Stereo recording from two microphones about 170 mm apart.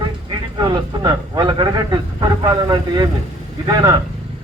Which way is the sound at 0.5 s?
25° right (ahead or behind).